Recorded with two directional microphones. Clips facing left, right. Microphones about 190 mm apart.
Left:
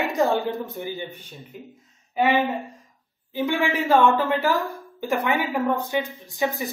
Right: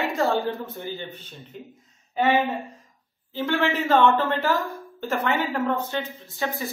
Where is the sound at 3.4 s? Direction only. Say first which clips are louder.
Left 1 dB; 10° left (ahead or behind).